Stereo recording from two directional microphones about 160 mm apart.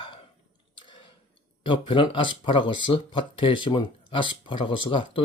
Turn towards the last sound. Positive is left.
turn(degrees=30)  # may be behind; listen again after turning